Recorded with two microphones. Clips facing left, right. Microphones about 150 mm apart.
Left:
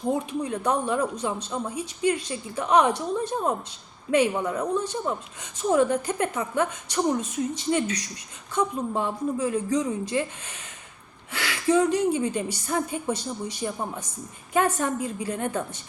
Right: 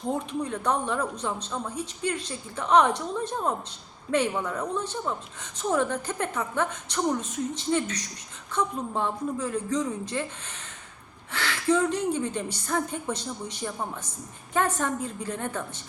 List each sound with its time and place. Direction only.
0.1 s a woman's voice: 10° left (ahead or behind)
5.7 s a woman's voice: 15° left (ahead or behind)
11.3 s a woman's voice: 10° left (ahead or behind)